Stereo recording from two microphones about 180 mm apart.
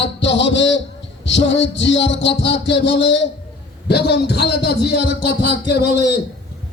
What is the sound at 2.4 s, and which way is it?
Speech, 85° left.